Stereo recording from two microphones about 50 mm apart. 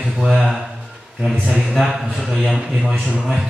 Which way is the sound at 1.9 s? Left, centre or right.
Centre.